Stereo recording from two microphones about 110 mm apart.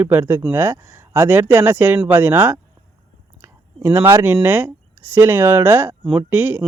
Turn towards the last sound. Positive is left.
turn(degrees=-15)  # may be behind; listen again after turning